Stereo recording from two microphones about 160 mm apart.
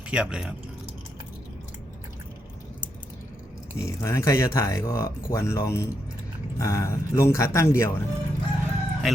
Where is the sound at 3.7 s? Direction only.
20° left (ahead or behind).